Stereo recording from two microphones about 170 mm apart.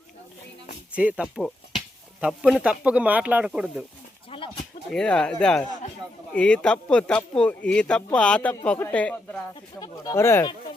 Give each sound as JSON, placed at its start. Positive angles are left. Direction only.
{"t": 0.9, "sound": "speech", "side_deg": -5}
{"t": 4.3, "sound": "a sound", "side_deg": 35}
{"t": 4.9, "sound": "speech", "side_deg": 5}
{"t": 9.8, "sound": "speech", "side_deg": 25}